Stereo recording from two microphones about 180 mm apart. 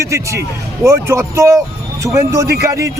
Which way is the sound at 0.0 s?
15° right (ahead or behind).